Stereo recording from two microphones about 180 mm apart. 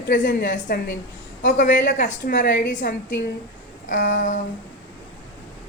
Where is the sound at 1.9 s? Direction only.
45° left (ahead or behind).